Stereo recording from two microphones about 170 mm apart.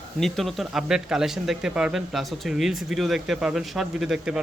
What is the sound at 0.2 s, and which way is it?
Speech, centre (ahead or behind).